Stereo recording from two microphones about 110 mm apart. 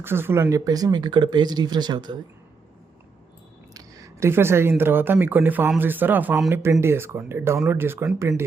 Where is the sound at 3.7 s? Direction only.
30° right (ahead or behind).